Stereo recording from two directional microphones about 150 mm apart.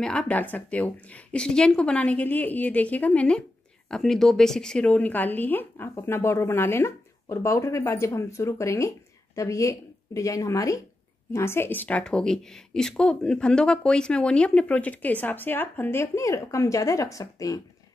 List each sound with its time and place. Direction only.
0.0 s a woman's voice: 5° left (ahead or behind); by 17.6 s 25° left (ahead or behind)